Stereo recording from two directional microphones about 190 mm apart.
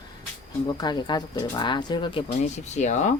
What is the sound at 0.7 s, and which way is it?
Speech, 20° left (ahead or behind).